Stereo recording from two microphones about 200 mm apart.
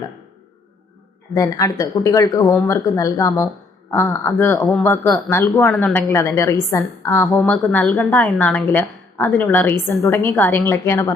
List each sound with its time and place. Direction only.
1.3 s a woman's voice: 15° left (ahead or behind)
7.4 s a woman's voice: 5° left (ahead or behind)